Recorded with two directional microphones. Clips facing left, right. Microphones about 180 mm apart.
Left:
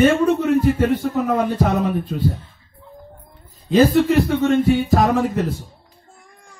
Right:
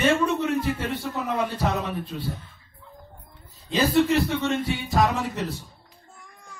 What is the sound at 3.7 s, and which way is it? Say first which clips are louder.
A man's voice: left 6 dB; 50° left (ahead or behind).